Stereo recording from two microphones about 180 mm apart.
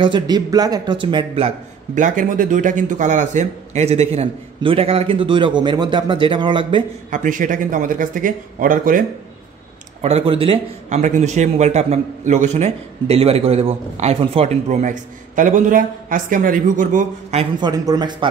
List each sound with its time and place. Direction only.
0.0 s a man's voice: 25° right (ahead or behind)
2.0 s a man's voice: 45° right (ahead or behind); by 6.8 s 25° right (ahead or behind)
7.1 s speech: 45° right (ahead or behind)
10.0 s a man's voice: 35° right (ahead or behind)
17.6 s a man's voice: 20° right (ahead or behind)